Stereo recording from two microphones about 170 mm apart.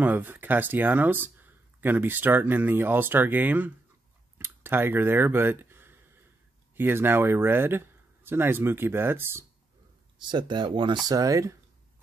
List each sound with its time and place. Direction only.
0.0 s speech: 10° right (ahead or behind)
10.1 s speech: 25° right (ahead or behind)